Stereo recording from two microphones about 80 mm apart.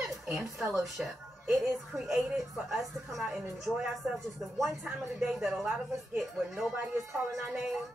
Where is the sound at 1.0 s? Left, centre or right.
Centre.